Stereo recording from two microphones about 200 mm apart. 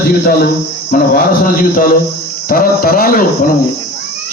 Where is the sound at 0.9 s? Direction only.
45° left (ahead or behind).